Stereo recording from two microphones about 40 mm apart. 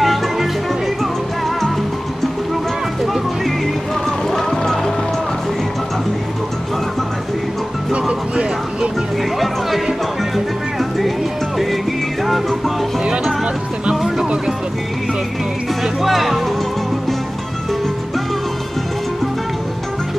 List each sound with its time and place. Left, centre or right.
0.0 s music: centre
4.3 s music: centre
7.9 s music: right
9.4 s music: centre
13.9 s music: centre
15.8 s music: centre